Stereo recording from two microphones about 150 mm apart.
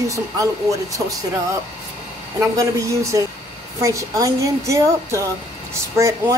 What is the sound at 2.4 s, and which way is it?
Speech, 20° right (ahead or behind).